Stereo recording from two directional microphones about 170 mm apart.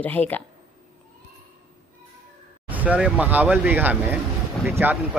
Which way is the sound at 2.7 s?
10° right (ahead or behind).